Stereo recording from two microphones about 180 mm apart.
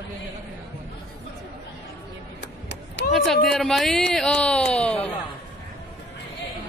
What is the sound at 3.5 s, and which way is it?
Speech, centre (ahead or behind).